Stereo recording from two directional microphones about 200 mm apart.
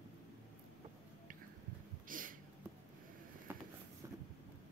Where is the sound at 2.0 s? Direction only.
45° right (ahead or behind).